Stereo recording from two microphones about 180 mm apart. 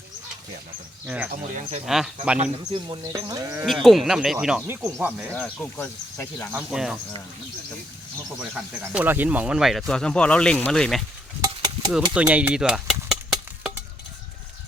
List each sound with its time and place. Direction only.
1.0 s speech: 5° right (ahead or behind)
1.3 s speech: 45° right (ahead or behind)
1.9 s speech: centre (ahead or behind)
2.4 s speech: 30° right (ahead or behind)
3.8 s speech: centre (ahead or behind)
4.6 s speech: 15° right (ahead or behind)
5.3 s speech: 5° left (ahead or behind)
6.5 s speech: 15° right (ahead or behind)
8.4 s speech: 5° right (ahead or behind)
11.3 s a sound: 20° right (ahead or behind)
12.1 s a sound: 5° right (ahead or behind)